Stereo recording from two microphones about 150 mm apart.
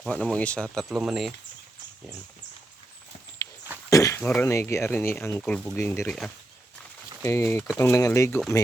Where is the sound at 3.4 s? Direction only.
20° left (ahead or behind).